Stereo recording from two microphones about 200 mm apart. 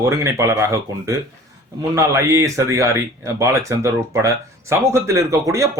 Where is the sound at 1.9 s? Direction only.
15° right (ahead or behind).